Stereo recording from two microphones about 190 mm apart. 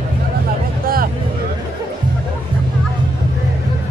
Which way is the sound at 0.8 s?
50° right (ahead or behind).